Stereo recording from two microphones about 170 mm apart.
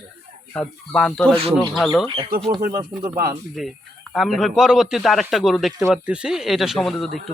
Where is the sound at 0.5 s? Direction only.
5° left (ahead or behind).